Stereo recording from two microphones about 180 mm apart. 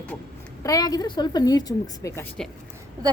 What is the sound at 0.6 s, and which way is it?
A woman's voice, 20° left (ahead or behind).